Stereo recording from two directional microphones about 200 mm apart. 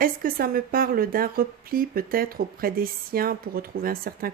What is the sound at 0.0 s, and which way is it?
Speech, 45° right (ahead or behind).